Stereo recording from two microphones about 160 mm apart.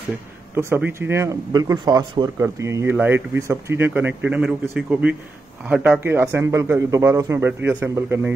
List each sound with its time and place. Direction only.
0.6 s speech: 15° right (ahead or behind)